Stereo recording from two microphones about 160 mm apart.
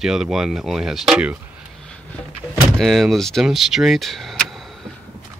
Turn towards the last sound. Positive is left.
turn(degrees=0)  # may be behind; listen again after turning